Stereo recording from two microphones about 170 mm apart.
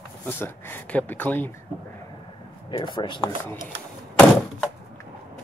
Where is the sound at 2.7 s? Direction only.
25° left (ahead or behind).